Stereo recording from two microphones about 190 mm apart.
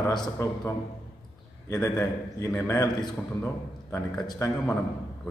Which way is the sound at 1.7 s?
15° left (ahead or behind).